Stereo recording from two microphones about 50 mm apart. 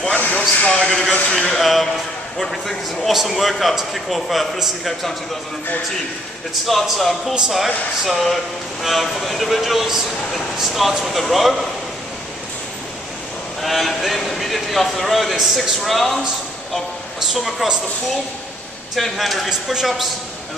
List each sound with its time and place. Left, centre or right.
0.1 s a sound: left
1.3 s speech: centre
6.7 s speech: centre
13.6 s speech: centre
17.3 s speech: centre
18.9 s speech: centre